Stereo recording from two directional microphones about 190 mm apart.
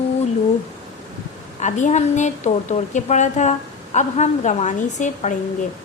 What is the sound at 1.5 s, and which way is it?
A woman's voice, 40° left (ahead or behind).